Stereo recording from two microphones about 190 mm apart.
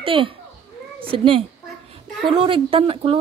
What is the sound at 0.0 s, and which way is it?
A child's voice, 30° right (ahead or behind).